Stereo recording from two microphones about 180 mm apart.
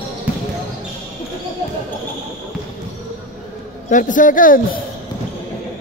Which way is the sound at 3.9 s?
45° left (ahead or behind).